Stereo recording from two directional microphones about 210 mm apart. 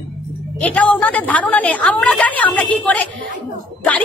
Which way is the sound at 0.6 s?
5° left (ahead or behind).